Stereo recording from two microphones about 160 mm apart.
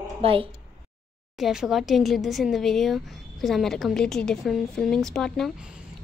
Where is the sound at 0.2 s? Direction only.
35° right (ahead or behind).